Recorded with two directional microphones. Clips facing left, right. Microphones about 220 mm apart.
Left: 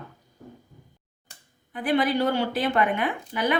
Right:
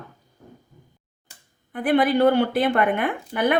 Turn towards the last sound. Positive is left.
turn(degrees=-55)  # may be behind; listen again after turning